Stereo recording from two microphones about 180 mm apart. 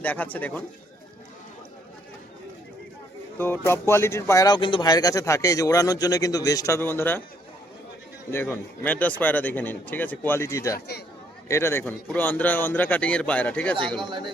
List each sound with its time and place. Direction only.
0.0 s speech: 10° left (ahead or behind)
3.3 s speech: 10° left (ahead or behind)
8.3 s speech: 10° left (ahead or behind)
10.8 s speech: 65° left (ahead or behind)
11.4 s speech: 15° left (ahead or behind)
14.0 s speech: 25° right (ahead or behind)